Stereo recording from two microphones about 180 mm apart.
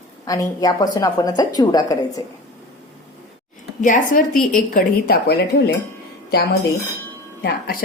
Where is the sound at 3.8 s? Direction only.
50° left (ahead or behind).